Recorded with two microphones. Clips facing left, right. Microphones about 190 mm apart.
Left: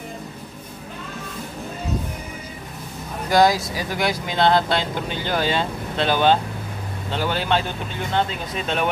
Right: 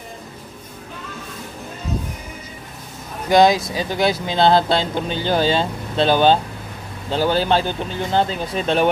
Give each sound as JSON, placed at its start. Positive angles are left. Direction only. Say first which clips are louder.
{"t": 3.3, "sound": "speech", "louder": "right 3 dB", "side_deg": -20}